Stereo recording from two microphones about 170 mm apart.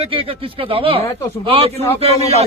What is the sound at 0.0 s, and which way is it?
Speech, 30° right (ahead or behind).